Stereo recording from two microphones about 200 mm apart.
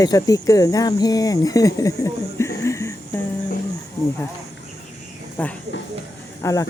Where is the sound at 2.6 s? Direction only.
15° left (ahead or behind).